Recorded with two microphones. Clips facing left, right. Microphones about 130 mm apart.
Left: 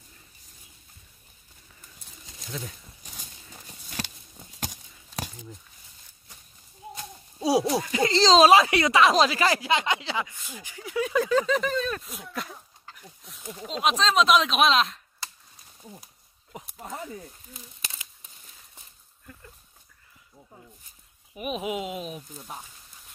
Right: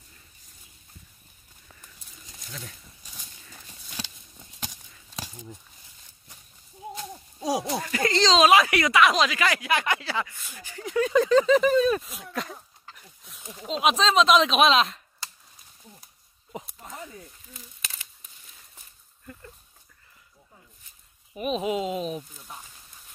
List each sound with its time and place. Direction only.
2.4 s speech: 15° left (ahead or behind)
7.3 s speech: 15° left (ahead or behind)
8.1 s speech: 35° left (ahead or behind); by 15.0 s centre (ahead or behind)
21.4 s speech: 10° left (ahead or behind)